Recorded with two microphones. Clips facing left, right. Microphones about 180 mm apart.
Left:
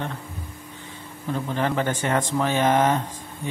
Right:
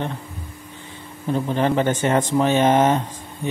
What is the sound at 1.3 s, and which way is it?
Speech, 20° right (ahead or behind).